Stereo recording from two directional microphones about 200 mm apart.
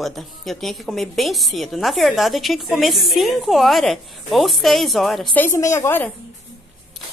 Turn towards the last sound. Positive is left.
turn(degrees=10)  # may be behind; listen again after turning